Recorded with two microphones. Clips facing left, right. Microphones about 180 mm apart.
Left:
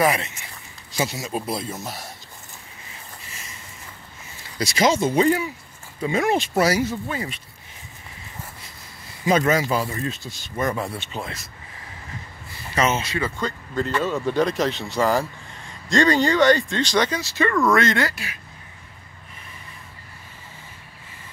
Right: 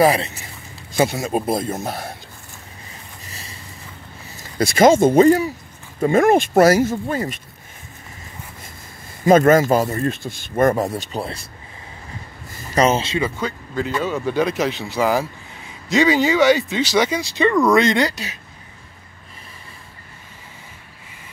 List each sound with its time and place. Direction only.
0.0 s speech: 35° right (ahead or behind)
0.9 s speech: 55° right (ahead or behind)
3.3 s vehicle: 35° right (ahead or behind)
4.4 s speech: 50° right (ahead or behind)
9.2 s speech: 50° right (ahead or behind)
12.4 s a sound: 40° right (ahead or behind)
13.0 s speech: 20° right (ahead or behind)
13.4 s speech: 5° right (ahead or behind)